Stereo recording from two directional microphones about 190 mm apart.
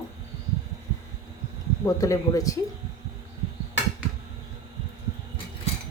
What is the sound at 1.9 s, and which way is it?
Speech, 15° left (ahead or behind).